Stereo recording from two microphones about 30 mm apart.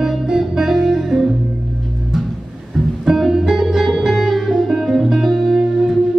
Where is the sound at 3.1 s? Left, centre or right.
Centre.